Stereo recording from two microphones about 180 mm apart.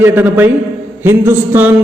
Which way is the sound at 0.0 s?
10° right (ahead or behind).